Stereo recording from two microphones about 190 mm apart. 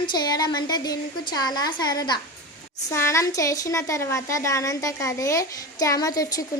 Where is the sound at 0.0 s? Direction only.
20° left (ahead or behind).